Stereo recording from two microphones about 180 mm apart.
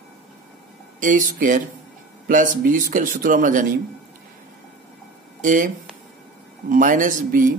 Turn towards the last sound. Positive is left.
turn(degrees=-50)  # may be behind; listen again after turning